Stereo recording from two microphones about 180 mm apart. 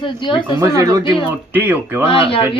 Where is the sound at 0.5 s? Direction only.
20° right (ahead or behind).